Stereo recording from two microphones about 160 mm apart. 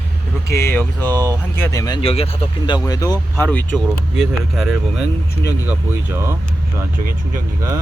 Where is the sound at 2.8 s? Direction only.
20° left (ahead or behind).